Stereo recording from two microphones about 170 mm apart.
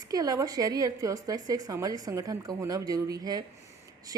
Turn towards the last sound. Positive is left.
turn(degrees=-20)  # may be behind; listen again after turning